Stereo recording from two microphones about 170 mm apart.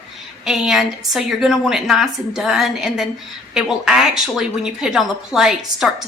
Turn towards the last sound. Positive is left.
turn(degrees=0)  # may be behind; listen again after turning